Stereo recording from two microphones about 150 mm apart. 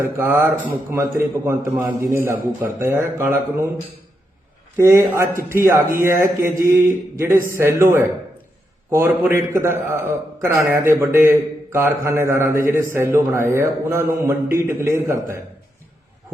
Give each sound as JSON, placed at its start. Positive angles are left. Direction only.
{"t": 0.2, "sound": "a man's voice", "side_deg": -15}
{"t": 4.8, "sound": "a man's voice", "side_deg": -20}